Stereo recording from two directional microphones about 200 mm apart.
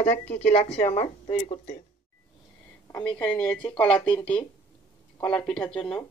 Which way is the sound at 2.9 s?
10° left (ahead or behind).